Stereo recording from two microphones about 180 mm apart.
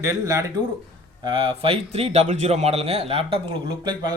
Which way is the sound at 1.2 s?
30° right (ahead or behind).